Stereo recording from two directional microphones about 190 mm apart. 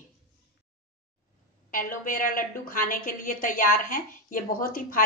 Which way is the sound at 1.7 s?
45° left (ahead or behind).